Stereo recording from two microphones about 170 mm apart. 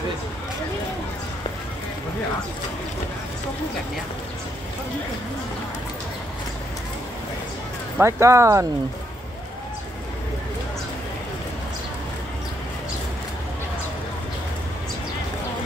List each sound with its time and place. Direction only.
8.0 s speech: 15° right (ahead or behind)